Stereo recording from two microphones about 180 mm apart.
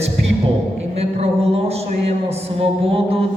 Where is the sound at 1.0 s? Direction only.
35° right (ahead or behind).